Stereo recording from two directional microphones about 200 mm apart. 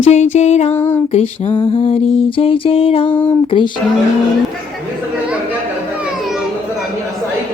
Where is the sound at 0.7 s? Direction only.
10° left (ahead or behind).